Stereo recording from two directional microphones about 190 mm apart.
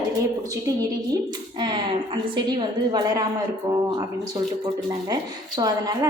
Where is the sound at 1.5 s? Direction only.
25° right (ahead or behind).